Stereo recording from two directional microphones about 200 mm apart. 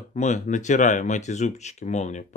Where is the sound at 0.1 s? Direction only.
35° left (ahead or behind).